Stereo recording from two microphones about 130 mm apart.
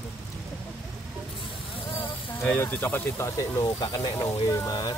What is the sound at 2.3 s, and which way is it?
Speech, 15° left (ahead or behind).